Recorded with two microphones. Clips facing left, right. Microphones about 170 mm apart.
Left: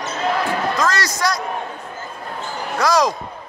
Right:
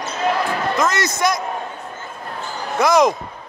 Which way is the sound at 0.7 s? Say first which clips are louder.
Right 1 dB; 20° right (ahead or behind).